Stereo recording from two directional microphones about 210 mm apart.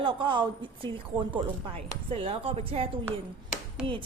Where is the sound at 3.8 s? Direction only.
5° right (ahead or behind).